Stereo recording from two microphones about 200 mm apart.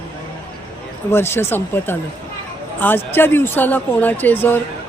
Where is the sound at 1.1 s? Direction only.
10° left (ahead or behind).